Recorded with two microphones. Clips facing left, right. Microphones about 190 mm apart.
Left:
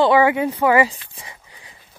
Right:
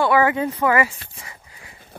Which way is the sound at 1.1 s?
15° left (ahead or behind).